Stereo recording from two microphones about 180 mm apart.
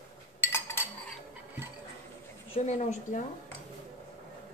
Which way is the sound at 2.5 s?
40° left (ahead or behind).